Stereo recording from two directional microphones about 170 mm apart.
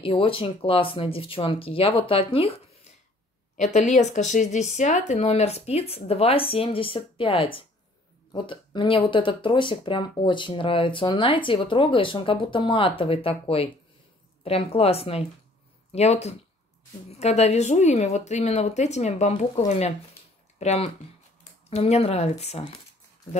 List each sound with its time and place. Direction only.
0.0 s a woman's voice: 30° left (ahead or behind)